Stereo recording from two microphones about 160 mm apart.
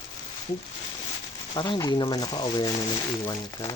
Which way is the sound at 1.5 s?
25° left (ahead or behind).